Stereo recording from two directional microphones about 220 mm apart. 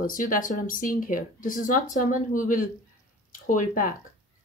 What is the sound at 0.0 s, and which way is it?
Speech, 40° left (ahead or behind).